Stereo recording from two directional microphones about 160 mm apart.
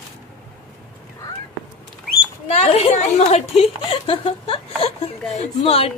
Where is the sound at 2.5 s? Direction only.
45° left (ahead or behind).